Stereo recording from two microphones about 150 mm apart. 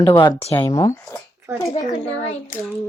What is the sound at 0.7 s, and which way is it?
Speech, 25° left (ahead or behind).